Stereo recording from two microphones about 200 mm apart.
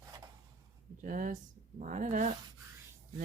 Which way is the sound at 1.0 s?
40° right (ahead or behind).